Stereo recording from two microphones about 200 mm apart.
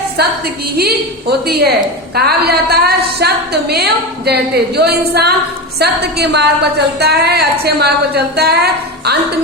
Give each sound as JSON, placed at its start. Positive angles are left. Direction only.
{"t": 0.2, "sound": "a woman's voice", "side_deg": -50}